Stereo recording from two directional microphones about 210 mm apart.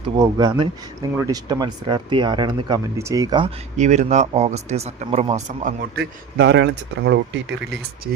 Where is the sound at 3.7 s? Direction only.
35° right (ahead or behind).